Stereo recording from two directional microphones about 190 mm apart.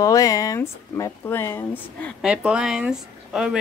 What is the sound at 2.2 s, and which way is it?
Speech, 5° right (ahead or behind).